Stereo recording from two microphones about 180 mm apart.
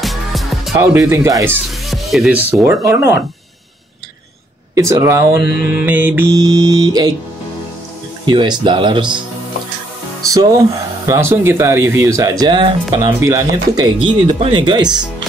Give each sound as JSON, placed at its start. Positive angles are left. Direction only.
{"t": 0.0, "sound": "music", "side_deg": 0}
{"t": 0.7, "sound": "speech", "side_deg": -15}
{"t": 1.5, "sound": "speech", "side_deg": 0}
{"t": 2.6, "sound": "speech", "side_deg": -15}
{"t": 4.7, "sound": "speech", "side_deg": -15}
{"t": 5.4, "sound": "mantra", "side_deg": 65}
{"t": 5.8, "sound": "speech", "side_deg": -10}
{"t": 6.3, "sound": "speech", "side_deg": -20}
{"t": 8.3, "sound": "speech", "side_deg": -25}
{"t": 10.2, "sound": "speech", "side_deg": -20}